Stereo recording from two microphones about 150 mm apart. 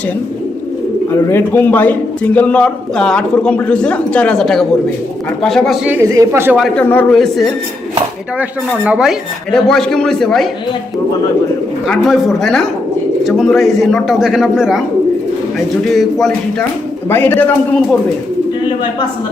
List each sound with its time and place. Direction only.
1.1 s a man's voice: 15° left (ahead or behind); by 6.1 s 10° right (ahead or behind)
6.1 s speech: 20° right (ahead or behind)
6.7 s a man's voice: 10° left (ahead or behind)
7.2 s speech: centre (ahead or behind)
11.9 s speech: centre (ahead or behind)
17.1 s a man's voice: 15° left (ahead or behind)